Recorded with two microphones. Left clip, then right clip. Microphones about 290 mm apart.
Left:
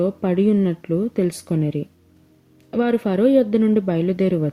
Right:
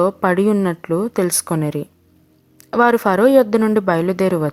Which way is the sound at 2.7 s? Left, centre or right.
Right.